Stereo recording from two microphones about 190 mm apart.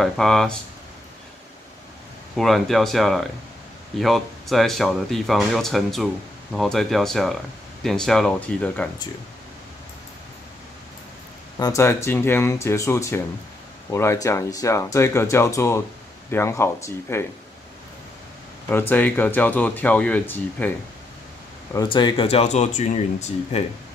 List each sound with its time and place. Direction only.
0.0 s speech: centre (ahead or behind)
2.3 s speech: centre (ahead or behind)
11.5 s speech: 20° left (ahead or behind)
18.7 s speech: 10° left (ahead or behind)
21.7 s speech: 25° left (ahead or behind)